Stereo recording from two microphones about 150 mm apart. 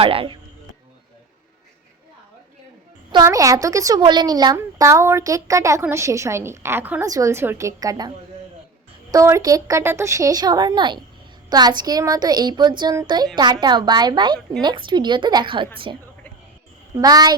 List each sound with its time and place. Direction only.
0.0 s a woman's voice: 40° right (ahead or behind)
3.1 s a woman's voice: 25° right (ahead or behind)
9.1 s a woman's voice: 20° right (ahead or behind)